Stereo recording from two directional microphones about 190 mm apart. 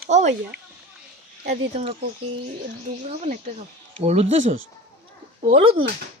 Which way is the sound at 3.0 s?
40° right (ahead or behind).